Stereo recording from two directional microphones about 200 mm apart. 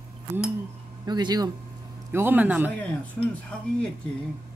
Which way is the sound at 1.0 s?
20° right (ahead or behind).